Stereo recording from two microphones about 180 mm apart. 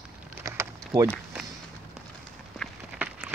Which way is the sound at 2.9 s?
10° right (ahead or behind).